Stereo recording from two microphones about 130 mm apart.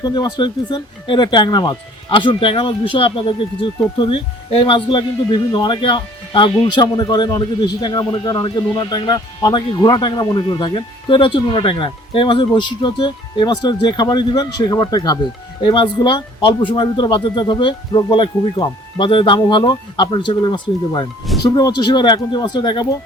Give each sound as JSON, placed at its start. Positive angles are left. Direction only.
{"t": 0.0, "sound": "speech", "side_deg": 35}